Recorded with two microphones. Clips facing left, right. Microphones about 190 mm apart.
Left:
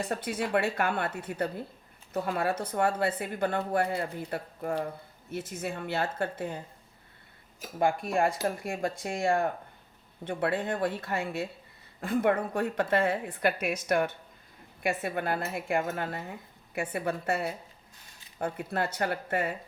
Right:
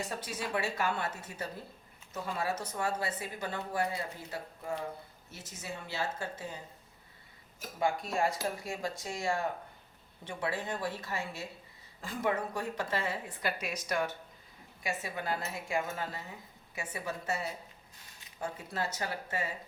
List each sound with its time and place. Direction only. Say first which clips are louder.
0.0 s speech: left 6 dB; 60° left (ahead or behind)
7.8 s speech: left 5 dB; 55° left (ahead or behind)